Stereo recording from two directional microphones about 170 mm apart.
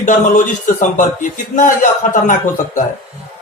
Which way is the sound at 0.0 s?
45° left (ahead or behind).